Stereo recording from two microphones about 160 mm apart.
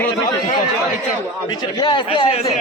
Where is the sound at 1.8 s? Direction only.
30° left (ahead or behind).